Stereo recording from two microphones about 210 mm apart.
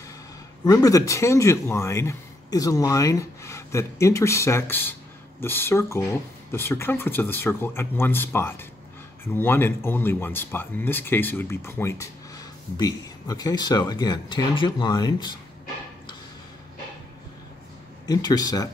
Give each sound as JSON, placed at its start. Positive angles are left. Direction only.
{"t": 0.7, "sound": "speech", "side_deg": 15}
{"t": 18.0, "sound": "speech", "side_deg": 20}